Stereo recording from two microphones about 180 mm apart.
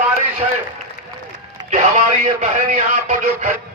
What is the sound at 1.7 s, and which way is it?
Speech, 40° right (ahead or behind).